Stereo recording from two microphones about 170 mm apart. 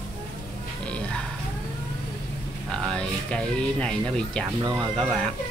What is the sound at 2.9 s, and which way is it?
Speech, 5° left (ahead or behind).